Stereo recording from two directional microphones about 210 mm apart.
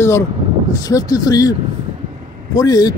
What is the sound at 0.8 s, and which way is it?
Speech, 15° left (ahead or behind).